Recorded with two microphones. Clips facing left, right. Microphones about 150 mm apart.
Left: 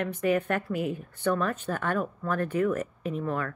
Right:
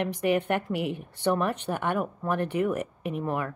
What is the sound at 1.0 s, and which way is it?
Speech, 20° right (ahead or behind).